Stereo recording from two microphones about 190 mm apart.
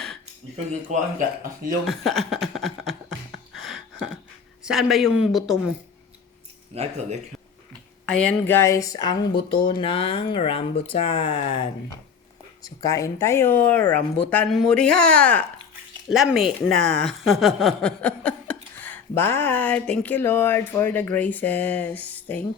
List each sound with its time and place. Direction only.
0.9 s speech: 40° right (ahead or behind)
1.9 s a sound: centre (ahead or behind)
4.6 s speech: centre (ahead or behind)
7.7 s speech: 5° left (ahead or behind); by 11.7 s 30° left (ahead or behind)
12.6 s speech: 15° left (ahead or behind)